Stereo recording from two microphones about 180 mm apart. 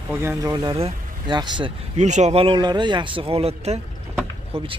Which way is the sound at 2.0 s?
40° right (ahead or behind).